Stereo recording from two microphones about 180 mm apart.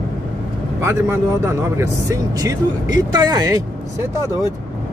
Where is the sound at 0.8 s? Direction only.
15° right (ahead or behind).